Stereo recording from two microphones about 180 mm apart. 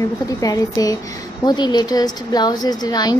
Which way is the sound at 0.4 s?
20° left (ahead or behind).